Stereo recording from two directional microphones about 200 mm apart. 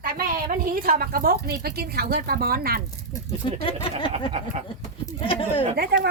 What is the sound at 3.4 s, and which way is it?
Speech, 25° left (ahead or behind).